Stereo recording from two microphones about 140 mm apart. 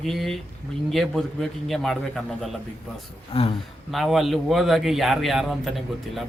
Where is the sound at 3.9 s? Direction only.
Centre (ahead or behind).